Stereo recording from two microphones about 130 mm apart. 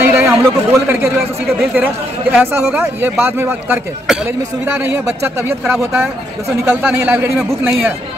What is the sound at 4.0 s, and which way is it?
Speech, 5° right (ahead or behind).